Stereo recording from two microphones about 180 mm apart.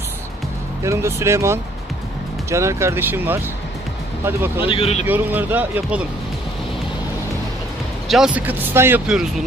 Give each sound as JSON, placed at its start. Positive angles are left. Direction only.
{"t": 0.8, "sound": "speech", "side_deg": -15}
{"t": 4.6, "sound": "speech", "side_deg": 30}
{"t": 5.0, "sound": "speech", "side_deg": -10}
{"t": 8.1, "sound": "speech", "side_deg": -5}